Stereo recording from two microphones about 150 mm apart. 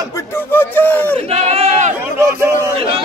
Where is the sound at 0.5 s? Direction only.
15° left (ahead or behind).